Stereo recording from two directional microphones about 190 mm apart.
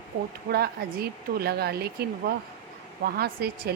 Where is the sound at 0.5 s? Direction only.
55° right (ahead or behind).